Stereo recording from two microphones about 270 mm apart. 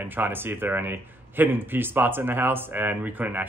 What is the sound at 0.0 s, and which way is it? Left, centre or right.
Speech, centre.